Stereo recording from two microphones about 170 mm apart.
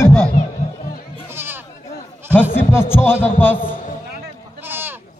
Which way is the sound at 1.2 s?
15° right (ahead or behind).